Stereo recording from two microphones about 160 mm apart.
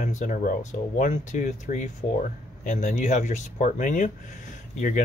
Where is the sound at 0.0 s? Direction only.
50° left (ahead or behind).